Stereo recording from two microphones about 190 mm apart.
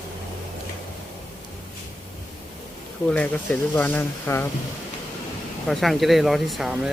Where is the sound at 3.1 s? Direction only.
5° left (ahead or behind).